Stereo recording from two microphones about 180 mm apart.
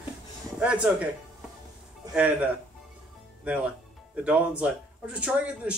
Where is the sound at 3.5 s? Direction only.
5° right (ahead or behind).